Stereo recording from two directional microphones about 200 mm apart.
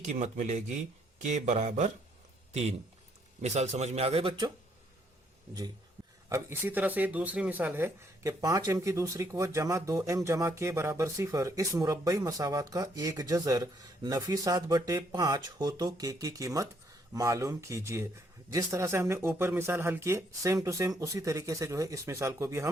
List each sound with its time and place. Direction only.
0.0 s a man's voice: 35° right (ahead or behind)
6.2 s speech: 15° right (ahead or behind)